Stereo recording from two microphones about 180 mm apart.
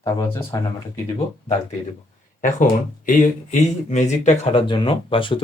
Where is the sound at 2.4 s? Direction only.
45° left (ahead or behind).